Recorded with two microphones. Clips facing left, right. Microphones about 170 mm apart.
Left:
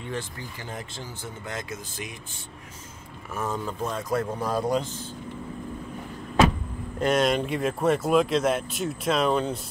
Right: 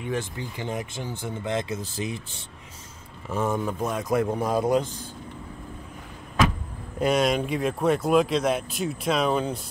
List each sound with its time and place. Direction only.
0.0 s speech: 15° right (ahead or behind)
3.3 s speech: 15° right (ahead or behind)
7.0 s speech: 5° right (ahead or behind)